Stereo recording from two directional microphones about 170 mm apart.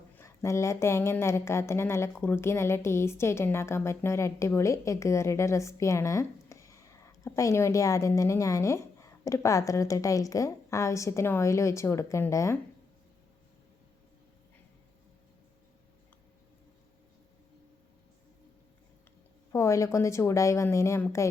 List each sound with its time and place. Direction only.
0.2 s a woman's voice: 15° left (ahead or behind)
19.5 s a woman's voice: 15° left (ahead or behind)